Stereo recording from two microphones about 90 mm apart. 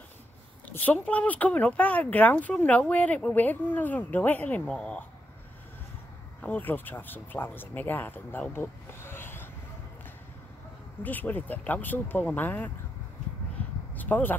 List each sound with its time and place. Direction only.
1.0 s speech: 15° left (ahead or behind)
6.4 s speech: 20° left (ahead or behind)
11.0 s speech: 20° left (ahead or behind)
13.9 s speech: 20° left (ahead or behind)